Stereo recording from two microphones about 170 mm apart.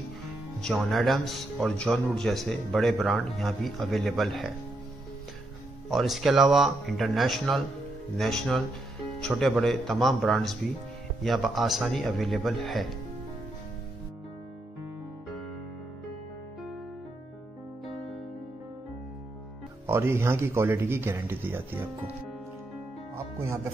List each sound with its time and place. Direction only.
0.6 s a man's voice: centre (ahead or behind)
5.9 s a man's voice: centre (ahead or behind)
17.8 s music: centre (ahead or behind)
19.9 s speech: 15° right (ahead or behind)
23.1 s speech: 15° right (ahead or behind)